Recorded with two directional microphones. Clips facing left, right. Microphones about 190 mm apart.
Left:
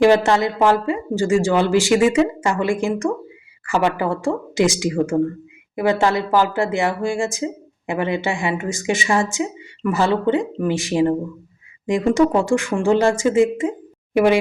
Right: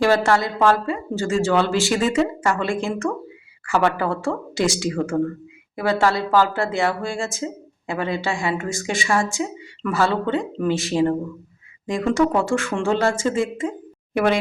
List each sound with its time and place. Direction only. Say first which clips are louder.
0.0 s speech: left 4 dB; 20° left (ahead or behind)